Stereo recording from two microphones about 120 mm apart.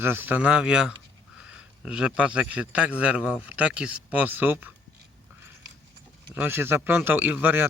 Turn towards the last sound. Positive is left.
turn(degrees=-15)  # may be behind; listen again after turning